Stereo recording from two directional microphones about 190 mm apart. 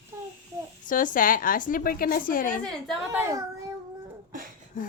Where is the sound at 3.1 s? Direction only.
15° right (ahead or behind).